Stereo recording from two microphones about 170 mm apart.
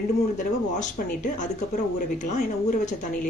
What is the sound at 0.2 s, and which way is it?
Speech, 45° left (ahead or behind).